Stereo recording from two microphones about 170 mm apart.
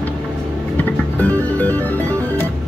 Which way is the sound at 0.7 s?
10° left (ahead or behind).